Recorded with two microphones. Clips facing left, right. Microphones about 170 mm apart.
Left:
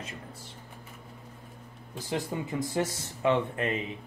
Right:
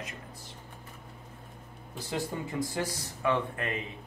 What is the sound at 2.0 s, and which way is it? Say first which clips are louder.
Speech: left 2 dB; 20° left (ahead or behind).